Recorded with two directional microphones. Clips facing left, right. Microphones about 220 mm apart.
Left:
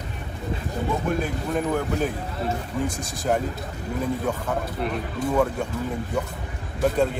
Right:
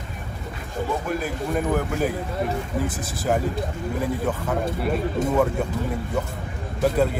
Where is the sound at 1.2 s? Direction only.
5° right (ahead or behind).